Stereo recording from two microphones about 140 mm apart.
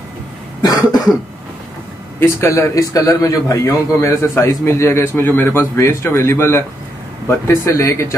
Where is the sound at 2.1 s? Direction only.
20° left (ahead or behind).